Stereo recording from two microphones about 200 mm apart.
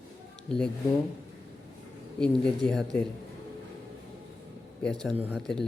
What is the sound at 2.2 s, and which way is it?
Speech, 5° left (ahead or behind).